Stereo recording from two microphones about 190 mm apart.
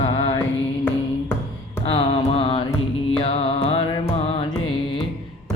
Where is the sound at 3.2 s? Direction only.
30° left (ahead or behind).